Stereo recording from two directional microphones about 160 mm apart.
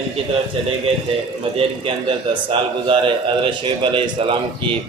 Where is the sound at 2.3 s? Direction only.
30° right (ahead or behind).